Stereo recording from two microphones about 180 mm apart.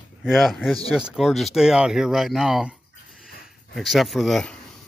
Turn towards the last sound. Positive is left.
turn(degrees=0)  # may be behind; listen again after turning